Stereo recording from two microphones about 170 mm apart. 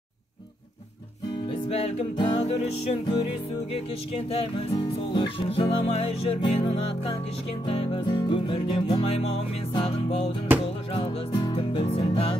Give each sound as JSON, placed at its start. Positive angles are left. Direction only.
{"t": 1.7, "sound": "music", "side_deg": 35}